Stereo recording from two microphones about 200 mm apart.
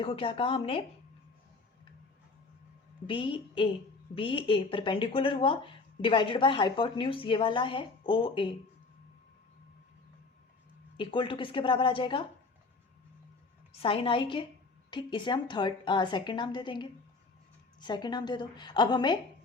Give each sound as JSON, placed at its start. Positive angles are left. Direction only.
{"t": 0.0, "sound": "speech", "side_deg": 25}
{"t": 3.1, "sound": "speech", "side_deg": 25}
{"t": 10.9, "sound": "speech", "side_deg": 25}
{"t": 13.7, "sound": "speech", "side_deg": 25}